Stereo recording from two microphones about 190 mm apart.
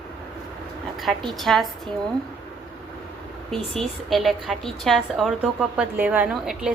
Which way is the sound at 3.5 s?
Centre (ahead or behind).